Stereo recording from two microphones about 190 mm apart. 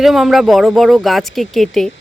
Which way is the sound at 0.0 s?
Centre (ahead or behind).